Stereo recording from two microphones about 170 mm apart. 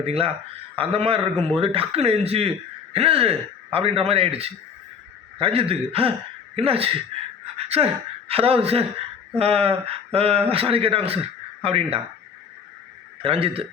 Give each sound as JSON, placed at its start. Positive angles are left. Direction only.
{"t": 0.0, "sound": "speech", "side_deg": -35}
{"t": 8.3, "sound": "speech", "side_deg": -35}
{"t": 13.2, "sound": "speech", "side_deg": -35}